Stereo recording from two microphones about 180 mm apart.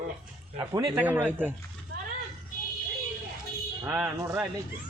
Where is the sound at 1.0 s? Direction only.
10° right (ahead or behind).